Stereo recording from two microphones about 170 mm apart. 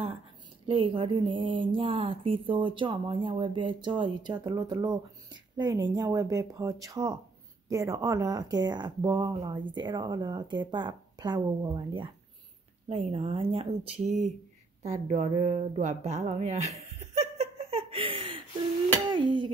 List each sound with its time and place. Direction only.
0.7 s speech: 30° right (ahead or behind)
17.1 s laughter: 40° right (ahead or behind)
19.0 s a sound: 25° right (ahead or behind)